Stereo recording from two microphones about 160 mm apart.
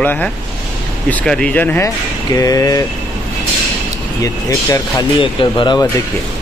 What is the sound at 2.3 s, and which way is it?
Speech, 20° left (ahead or behind).